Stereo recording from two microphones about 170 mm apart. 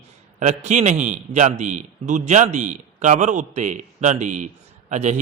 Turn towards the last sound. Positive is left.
turn(degrees=-40)  # may be behind; listen again after turning